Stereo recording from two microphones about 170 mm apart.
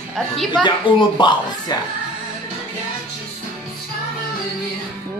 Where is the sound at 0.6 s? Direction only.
25° left (ahead or behind).